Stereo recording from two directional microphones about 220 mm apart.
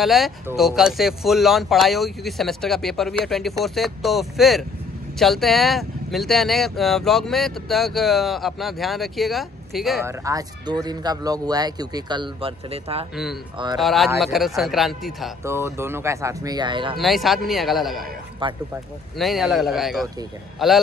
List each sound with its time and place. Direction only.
0.0 s speech: centre (ahead or behind)
10.0 s speech: 15° right (ahead or behind)
13.1 s speech: centre (ahead or behind)
15.4 s speech: 10° right (ahead or behind)
16.9 s speech: centre (ahead or behind)
18.4 s speech: 20° right (ahead or behind)
19.1 s speech: centre (ahead or behind)